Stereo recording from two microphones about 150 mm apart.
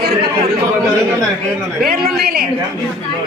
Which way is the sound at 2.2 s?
90° right.